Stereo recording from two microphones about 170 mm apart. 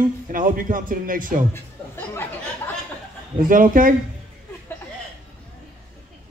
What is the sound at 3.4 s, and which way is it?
Speech, 55° right (ahead or behind).